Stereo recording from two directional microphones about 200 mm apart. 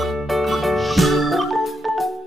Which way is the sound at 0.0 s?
Centre (ahead or behind).